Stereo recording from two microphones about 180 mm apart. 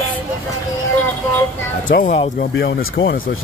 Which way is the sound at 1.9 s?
65° left (ahead or behind).